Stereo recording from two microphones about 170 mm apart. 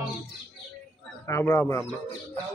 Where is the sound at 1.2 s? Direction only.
15° left (ahead or behind).